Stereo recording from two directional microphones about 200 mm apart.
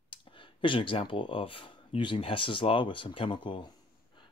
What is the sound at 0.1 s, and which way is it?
Speech, 25° left (ahead or behind).